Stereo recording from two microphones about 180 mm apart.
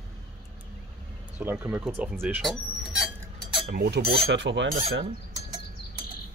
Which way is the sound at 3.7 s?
60° right (ahead or behind).